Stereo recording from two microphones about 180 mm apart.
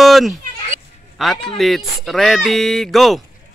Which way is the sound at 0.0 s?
Centre (ahead or behind).